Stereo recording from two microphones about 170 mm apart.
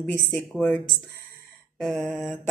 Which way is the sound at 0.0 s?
5° left (ahead or behind).